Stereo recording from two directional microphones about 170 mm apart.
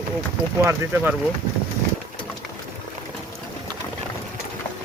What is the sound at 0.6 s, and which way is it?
Speech, 15° right (ahead or behind).